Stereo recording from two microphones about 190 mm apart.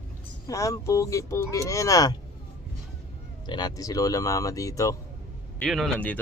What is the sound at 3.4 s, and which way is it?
Speech, 20° left (ahead or behind).